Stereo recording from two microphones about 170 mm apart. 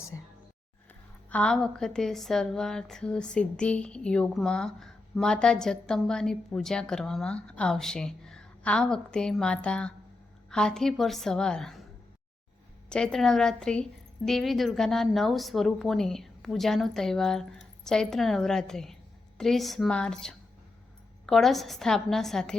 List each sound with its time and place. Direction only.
1.3 s a woman's voice: 5° left (ahead or behind)
12.9 s a woman's voice: 5° left (ahead or behind)